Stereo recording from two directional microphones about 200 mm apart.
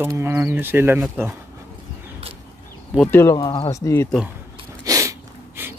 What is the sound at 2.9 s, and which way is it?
Speech, 5° left (ahead or behind).